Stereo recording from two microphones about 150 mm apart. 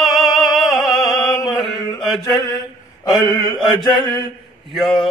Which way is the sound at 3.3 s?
25° left (ahead or behind).